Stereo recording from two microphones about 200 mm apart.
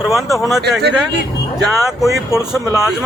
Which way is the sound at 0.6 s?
55° right (ahead or behind).